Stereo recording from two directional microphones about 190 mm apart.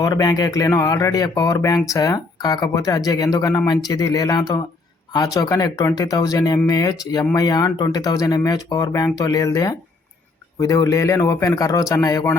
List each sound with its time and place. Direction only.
0.0 s speech: 20° left (ahead or behind)